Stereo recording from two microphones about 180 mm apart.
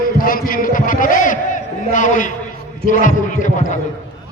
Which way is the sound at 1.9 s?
45° left (ahead or behind).